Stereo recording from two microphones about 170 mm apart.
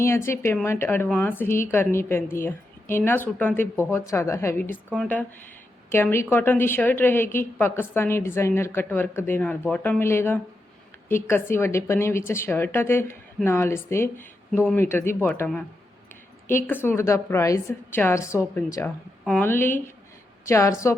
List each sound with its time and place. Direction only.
0.0 s a woman's voice: 15° left (ahead or behind)
16.6 s a woman's voice: 10° left (ahead or behind)